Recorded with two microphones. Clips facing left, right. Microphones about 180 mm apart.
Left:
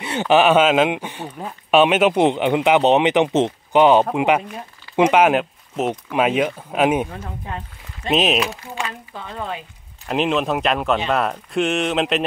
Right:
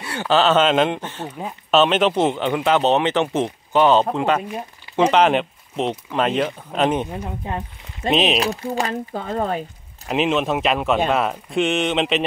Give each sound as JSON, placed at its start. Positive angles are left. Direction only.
{"t": 0.0, "sound": "speech", "side_deg": 20}
{"t": 7.1, "sound": "speech", "side_deg": -20}
{"t": 8.1, "sound": "speech", "side_deg": 0}
{"t": 8.4, "sound": "speech", "side_deg": -40}
{"t": 10.0, "sound": "speech", "side_deg": 0}